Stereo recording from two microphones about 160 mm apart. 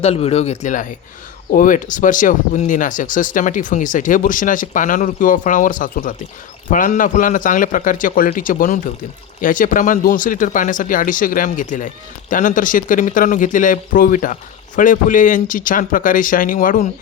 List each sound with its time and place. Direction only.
0.0 s speech: 40° left (ahead or behind); by 16.8 s 60° left (ahead or behind)